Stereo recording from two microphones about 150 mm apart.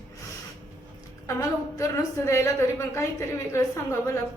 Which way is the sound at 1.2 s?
20° left (ahead or behind).